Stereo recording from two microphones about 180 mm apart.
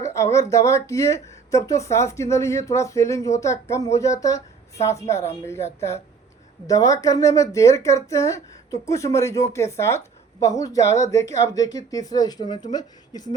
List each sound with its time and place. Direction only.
0.0 s a sound: 15° left (ahead or behind)
0.5 s speech: 15° left (ahead or behind)
6.7 s speech: 20° left (ahead or behind)